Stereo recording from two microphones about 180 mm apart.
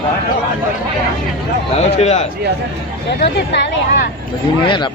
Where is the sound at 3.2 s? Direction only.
70° left (ahead or behind).